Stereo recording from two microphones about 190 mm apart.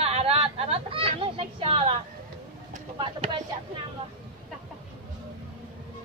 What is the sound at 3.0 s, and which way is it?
Speech, 25° right (ahead or behind).